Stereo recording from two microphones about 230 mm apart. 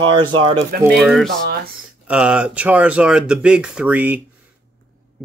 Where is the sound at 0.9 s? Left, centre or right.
Centre.